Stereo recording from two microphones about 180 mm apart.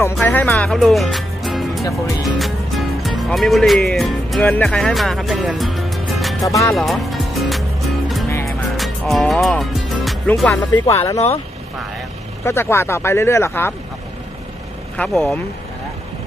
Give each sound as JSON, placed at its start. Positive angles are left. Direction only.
{"t": 0.0, "sound": "music", "side_deg": 10}
{"t": 2.2, "sound": "speech", "side_deg": 0}
{"t": 6.7, "sound": "music", "side_deg": 0}
{"t": 10.3, "sound": "speech", "side_deg": 10}
{"t": 12.4, "sound": "speech", "side_deg": 15}
{"t": 15.0, "sound": "speech", "side_deg": 5}